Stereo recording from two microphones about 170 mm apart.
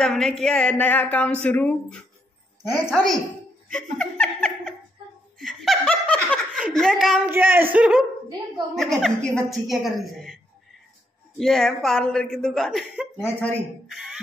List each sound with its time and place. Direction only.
0.0 s speech: 5° left (ahead or behind)
3.7 s speech: 5° left (ahead or behind)
5.4 s laughter: centre (ahead or behind)
6.7 s speech: 5° left (ahead or behind)
7.2 s speech: 10° right (ahead or behind)
13.2 s speech: 10° left (ahead or behind)
13.9 s music: 5° right (ahead or behind)